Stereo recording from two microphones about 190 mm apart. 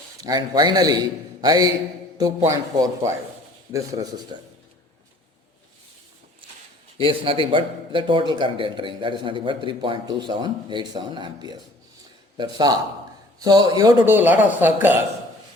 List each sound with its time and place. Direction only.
0.2 s a man's voice: 20° right (ahead or behind)
7.0 s a man's voice: 30° right (ahead or behind); by 15.0 s 10° right (ahead or behind)